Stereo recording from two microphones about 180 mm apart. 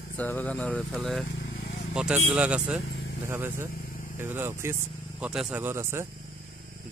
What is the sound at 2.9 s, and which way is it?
Vehicle, 65° left (ahead or behind).